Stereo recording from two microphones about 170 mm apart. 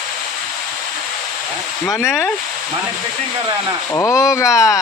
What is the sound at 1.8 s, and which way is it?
Speech, 15° left (ahead or behind).